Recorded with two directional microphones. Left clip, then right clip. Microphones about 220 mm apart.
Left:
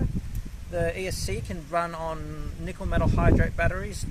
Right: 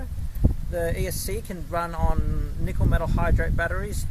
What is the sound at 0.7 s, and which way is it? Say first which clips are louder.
Speech: left 1 dB; 15° right (ahead or behind).